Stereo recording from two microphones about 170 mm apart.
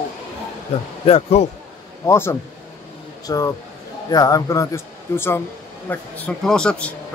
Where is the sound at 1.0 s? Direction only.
40° left (ahead or behind).